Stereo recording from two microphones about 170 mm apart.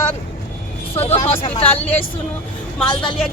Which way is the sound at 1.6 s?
10° left (ahead or behind).